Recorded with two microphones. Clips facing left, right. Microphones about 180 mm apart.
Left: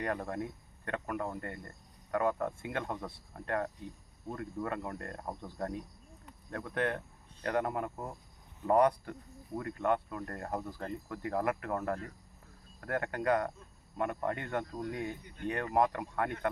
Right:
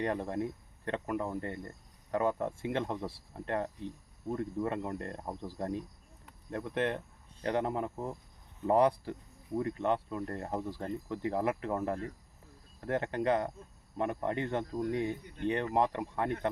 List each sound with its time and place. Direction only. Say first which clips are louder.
0.0 s speech: right 3 dB; 25° right (ahead or behind)